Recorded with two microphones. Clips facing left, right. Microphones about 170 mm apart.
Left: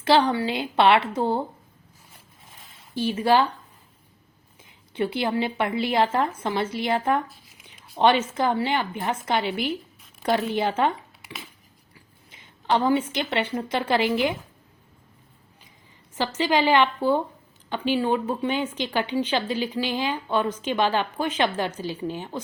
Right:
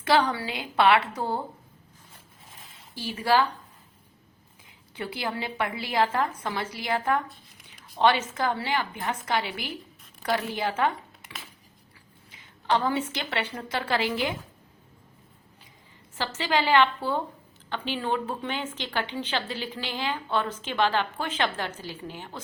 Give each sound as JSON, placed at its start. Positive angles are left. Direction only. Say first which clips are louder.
{"t": 0.0, "sound": "a woman's voice", "louder": "left 4 dB", "side_deg": 30}
{"t": 2.9, "sound": "a woman's voice", "louder": "left 4 dB", "side_deg": 25}
{"t": 4.9, "sound": "a woman's voice", "louder": "left 8 dB", "side_deg": 20}
{"t": 12.3, "sound": "a woman's voice", "louder": "left 2 dB", "side_deg": 20}
{"t": 16.1, "sound": "a woman's voice", "louder": "left 4 dB", "side_deg": 15}